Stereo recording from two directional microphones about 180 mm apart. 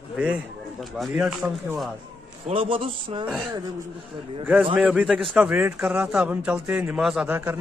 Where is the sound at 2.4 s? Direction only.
30° right (ahead or behind).